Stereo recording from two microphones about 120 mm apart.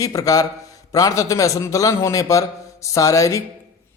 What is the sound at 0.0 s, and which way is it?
A man's voice, 30° left (ahead or behind).